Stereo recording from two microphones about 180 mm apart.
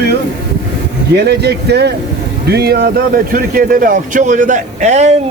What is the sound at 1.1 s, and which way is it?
Speech, 65° right (ahead or behind).